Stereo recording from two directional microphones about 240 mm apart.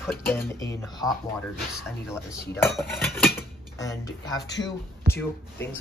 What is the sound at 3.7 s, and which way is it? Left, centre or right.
Speech, centre.